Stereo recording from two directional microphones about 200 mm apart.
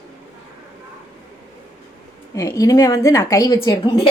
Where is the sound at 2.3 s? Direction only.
15° left (ahead or behind).